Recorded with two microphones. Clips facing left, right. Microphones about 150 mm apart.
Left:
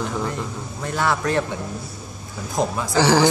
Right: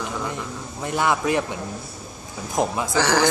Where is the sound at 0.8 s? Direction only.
15° right (ahead or behind).